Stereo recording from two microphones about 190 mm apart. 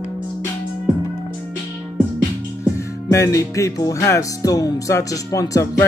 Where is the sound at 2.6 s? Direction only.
15° left (ahead or behind).